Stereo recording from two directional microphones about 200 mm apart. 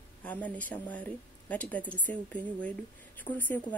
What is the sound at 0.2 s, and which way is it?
A woman's voice, 5° left (ahead or behind).